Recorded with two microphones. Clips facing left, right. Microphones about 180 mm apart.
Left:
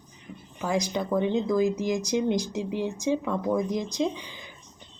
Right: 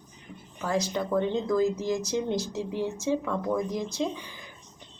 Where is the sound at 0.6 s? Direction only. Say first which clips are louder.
Left 1 dB; 15° left (ahead or behind).